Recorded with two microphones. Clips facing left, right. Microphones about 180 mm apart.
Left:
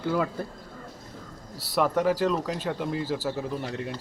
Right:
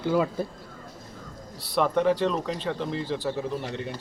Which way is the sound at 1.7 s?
5° left (ahead or behind).